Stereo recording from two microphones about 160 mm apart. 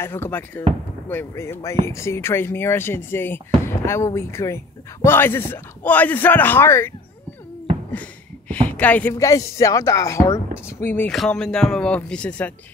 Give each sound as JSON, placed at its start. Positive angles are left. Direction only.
{"t": 0.0, "sound": "speech", "side_deg": 15}
{"t": 8.5, "sound": "speech", "side_deg": 10}
{"t": 11.1, "sound": "speech", "side_deg": 5}